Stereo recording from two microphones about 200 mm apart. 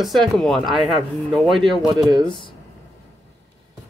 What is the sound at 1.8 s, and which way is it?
Speech, 20° right (ahead or behind).